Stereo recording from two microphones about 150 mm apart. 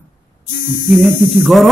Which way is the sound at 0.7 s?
60° left (ahead or behind).